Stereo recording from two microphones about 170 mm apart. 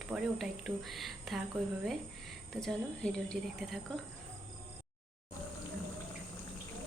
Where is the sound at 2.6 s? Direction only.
5° left (ahead or behind).